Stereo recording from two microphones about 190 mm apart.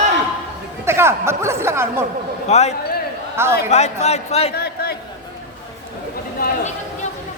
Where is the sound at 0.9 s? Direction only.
15° right (ahead or behind).